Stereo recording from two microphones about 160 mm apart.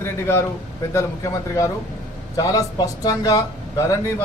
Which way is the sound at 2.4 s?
20° left (ahead or behind).